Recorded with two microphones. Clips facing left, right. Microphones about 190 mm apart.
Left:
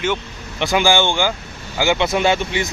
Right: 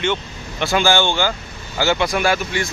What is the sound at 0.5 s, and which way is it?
A man's voice, 15° left (ahead or behind).